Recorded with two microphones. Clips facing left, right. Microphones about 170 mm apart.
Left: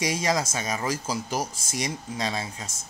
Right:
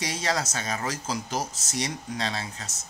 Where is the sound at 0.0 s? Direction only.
10° left (ahead or behind).